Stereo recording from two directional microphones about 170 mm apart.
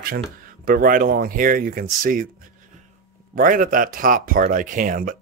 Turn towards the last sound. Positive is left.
turn(degrees=-55)  # may be behind; listen again after turning